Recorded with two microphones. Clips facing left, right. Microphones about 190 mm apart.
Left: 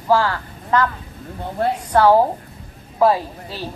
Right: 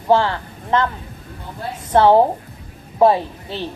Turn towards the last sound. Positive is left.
turn(degrees=-25)  # may be behind; listen again after turning